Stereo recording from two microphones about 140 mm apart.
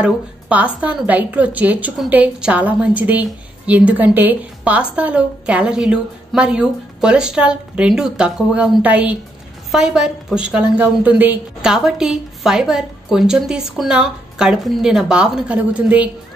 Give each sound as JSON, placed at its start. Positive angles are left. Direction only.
{"t": 0.0, "sound": "a woman's voice", "side_deg": -10}